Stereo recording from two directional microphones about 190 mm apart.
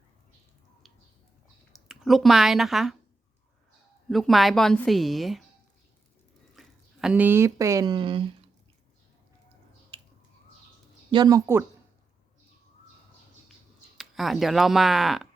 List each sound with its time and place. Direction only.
1.9 s speech: centre (ahead or behind)
4.1 s speech: centre (ahead or behind)
6.6 s speech: 5° right (ahead or behind); by 8.3 s 25° right (ahead or behind)
11.1 s speech: 20° right (ahead or behind)
14.0 s speech: centre (ahead or behind)